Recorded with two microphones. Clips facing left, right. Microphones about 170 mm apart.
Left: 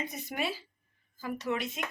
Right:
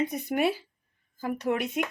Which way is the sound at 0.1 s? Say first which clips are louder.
Right 8 dB; 55° right (ahead or behind).